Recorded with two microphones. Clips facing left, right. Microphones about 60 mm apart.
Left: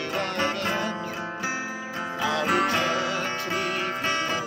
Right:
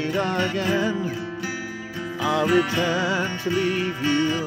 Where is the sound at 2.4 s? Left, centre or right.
Left.